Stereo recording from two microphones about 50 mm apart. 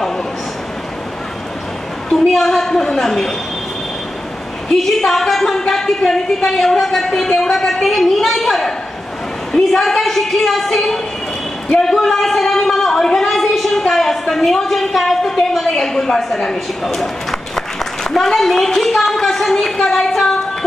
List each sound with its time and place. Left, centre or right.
2.1 s a woman's voice: centre
4.6 s a woman's voice: centre
11.7 s a sound: centre
15.5 s speech: centre